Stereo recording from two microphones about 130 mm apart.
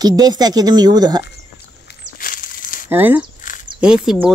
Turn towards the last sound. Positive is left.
turn(degrees=-5)  # may be behind; listen again after turning